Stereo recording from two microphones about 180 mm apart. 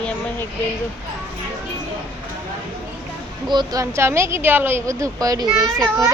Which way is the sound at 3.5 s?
20° right (ahead or behind).